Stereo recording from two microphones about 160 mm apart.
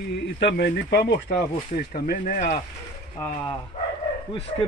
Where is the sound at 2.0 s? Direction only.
55° left (ahead or behind).